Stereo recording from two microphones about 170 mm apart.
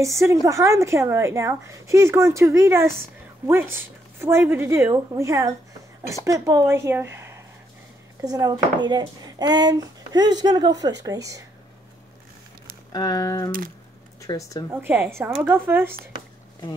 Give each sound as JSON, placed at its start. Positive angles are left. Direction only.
{"t": 0.0, "sound": "a woman's voice", "side_deg": -15}
{"t": 12.9, "sound": "speech", "side_deg": 20}
{"t": 14.7, "sound": "a woman's voice", "side_deg": -10}